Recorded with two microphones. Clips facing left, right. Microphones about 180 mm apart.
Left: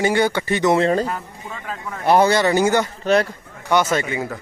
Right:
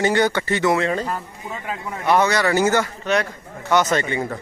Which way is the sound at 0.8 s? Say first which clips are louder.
Left 4 dB; 35° left (ahead or behind).